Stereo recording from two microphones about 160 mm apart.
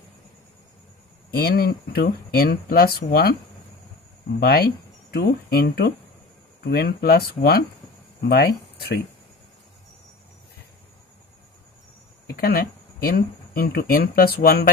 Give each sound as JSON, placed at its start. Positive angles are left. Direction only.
{"t": 1.3, "sound": "speech", "side_deg": 70}
{"t": 4.4, "sound": "speech", "side_deg": 70}
{"t": 12.4, "sound": "speech", "side_deg": 70}